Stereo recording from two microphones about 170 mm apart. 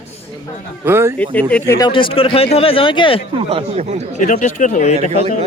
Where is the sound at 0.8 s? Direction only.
15° right (ahead or behind).